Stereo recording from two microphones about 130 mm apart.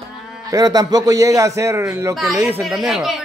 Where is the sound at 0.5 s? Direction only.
30° right (ahead or behind).